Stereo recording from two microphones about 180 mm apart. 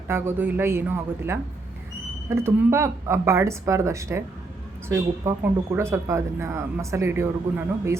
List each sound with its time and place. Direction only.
0.1 s speech: 10° right (ahead or behind)
5.2 s speech: 15° right (ahead or behind)